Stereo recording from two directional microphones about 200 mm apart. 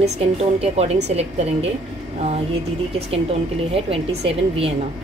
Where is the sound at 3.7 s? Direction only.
30° right (ahead or behind).